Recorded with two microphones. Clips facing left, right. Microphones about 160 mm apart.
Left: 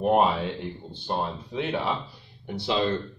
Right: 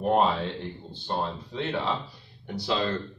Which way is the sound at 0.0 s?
15° left (ahead or behind).